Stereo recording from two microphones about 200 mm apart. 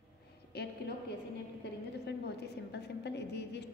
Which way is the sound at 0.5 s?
55° left (ahead or behind).